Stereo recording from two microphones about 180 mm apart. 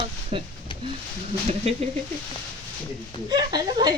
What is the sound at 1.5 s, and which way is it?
Speech, 35° right (ahead or behind).